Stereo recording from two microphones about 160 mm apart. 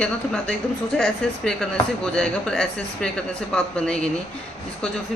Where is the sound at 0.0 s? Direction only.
5° left (ahead or behind).